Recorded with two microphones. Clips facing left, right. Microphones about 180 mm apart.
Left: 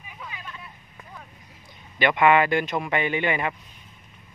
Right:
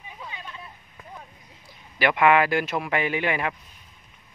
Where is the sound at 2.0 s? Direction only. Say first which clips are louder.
Even; centre (ahead or behind).